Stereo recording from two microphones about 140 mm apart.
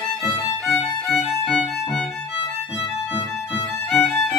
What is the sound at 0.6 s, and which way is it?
Music, 5° left (ahead or behind).